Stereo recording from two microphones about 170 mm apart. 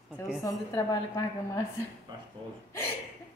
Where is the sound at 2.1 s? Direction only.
25° right (ahead or behind).